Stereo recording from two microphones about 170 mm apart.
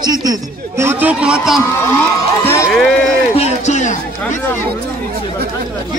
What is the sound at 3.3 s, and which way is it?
Speech, 40° left (ahead or behind).